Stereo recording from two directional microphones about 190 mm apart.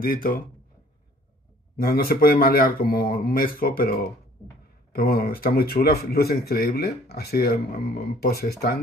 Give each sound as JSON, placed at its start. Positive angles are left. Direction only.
{"t": 0.0, "sound": "speech", "side_deg": 50}
{"t": 1.8, "sound": "speech", "side_deg": 50}
{"t": 4.9, "sound": "speech", "side_deg": 55}